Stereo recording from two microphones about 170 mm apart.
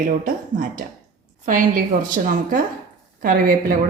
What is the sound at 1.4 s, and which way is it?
A woman's voice, 50° right (ahead or behind).